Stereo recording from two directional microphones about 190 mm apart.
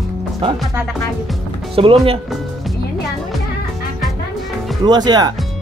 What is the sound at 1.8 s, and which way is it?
Speech, 30° right (ahead or behind).